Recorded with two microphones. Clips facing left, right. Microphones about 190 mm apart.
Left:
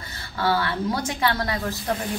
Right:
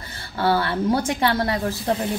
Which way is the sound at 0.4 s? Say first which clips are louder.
Right 3 dB; 30° right (ahead or behind).